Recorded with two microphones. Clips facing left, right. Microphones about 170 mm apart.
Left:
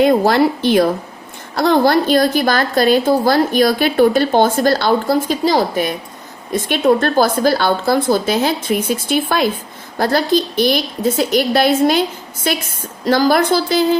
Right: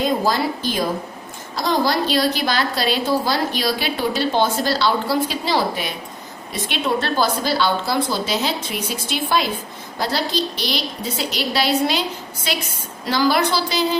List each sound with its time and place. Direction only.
0.0 s a woman's voice: 65° left (ahead or behind)